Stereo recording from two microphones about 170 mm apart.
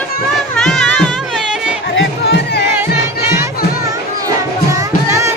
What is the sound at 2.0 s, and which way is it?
Music, 90° left.